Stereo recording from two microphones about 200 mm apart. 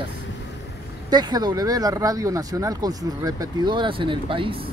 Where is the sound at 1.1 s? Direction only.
20° right (ahead or behind).